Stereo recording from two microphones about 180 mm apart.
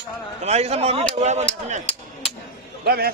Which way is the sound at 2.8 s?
60° right (ahead or behind).